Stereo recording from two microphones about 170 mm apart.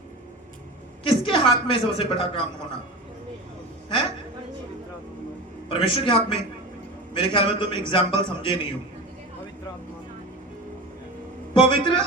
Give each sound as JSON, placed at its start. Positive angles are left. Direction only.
{"t": 1.0, "sound": "a woman's voice", "side_deg": 30}
{"t": 5.6, "sound": "a man's voice", "side_deg": 35}
{"t": 11.5, "sound": "a man's voice", "side_deg": 30}